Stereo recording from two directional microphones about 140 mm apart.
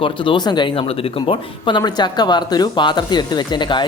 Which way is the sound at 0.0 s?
35° left (ahead or behind).